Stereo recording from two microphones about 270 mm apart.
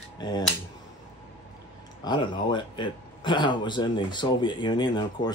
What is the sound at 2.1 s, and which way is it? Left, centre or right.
A man's voice, centre.